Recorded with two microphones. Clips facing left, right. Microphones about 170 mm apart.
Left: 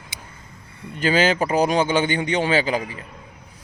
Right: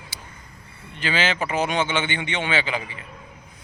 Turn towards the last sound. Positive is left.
turn(degrees=40)  # may be behind; listen again after turning